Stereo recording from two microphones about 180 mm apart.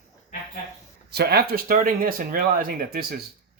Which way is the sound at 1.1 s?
65° right (ahead or behind).